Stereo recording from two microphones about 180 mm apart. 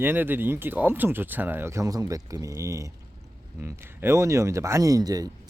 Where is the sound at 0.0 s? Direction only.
10° right (ahead or behind).